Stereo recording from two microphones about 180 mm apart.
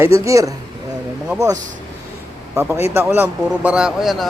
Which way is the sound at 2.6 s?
15° right (ahead or behind).